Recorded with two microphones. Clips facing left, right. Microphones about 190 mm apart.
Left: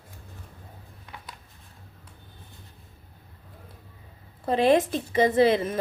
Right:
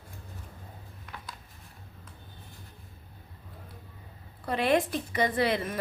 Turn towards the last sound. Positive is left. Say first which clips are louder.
# left 7 dB
turn(degrees=25)  # may be behind; listen again after turning